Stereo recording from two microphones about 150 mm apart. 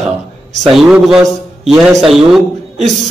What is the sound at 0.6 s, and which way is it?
A man's voice, centre (ahead or behind).